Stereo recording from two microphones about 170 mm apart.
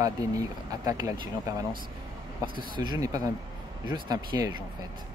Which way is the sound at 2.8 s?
25° right (ahead or behind).